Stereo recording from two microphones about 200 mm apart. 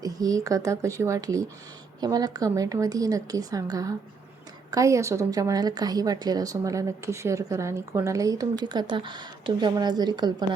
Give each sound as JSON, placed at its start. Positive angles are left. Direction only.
{"t": 0.0, "sound": "a woman's voice", "side_deg": -15}